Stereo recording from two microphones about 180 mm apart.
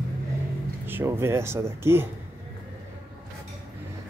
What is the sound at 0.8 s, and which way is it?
Speech, 10° right (ahead or behind).